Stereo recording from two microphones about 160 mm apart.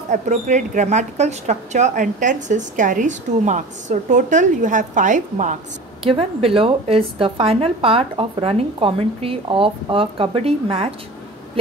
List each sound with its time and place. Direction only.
0.1 s a woman's voice: 50° right (ahead or behind)
6.0 s a woman's voice: 35° right (ahead or behind)